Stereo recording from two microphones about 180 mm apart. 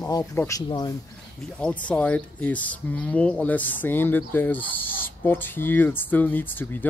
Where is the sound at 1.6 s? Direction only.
5° left (ahead or behind).